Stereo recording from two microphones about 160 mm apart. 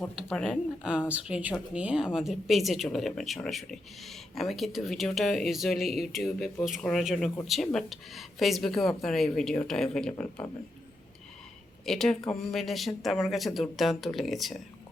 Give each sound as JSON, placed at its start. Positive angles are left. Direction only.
{"t": 0.2, "sound": "speech", "side_deg": 0}
{"t": 0.9, "sound": "speech", "side_deg": -10}
{"t": 11.9, "sound": "speech", "side_deg": 5}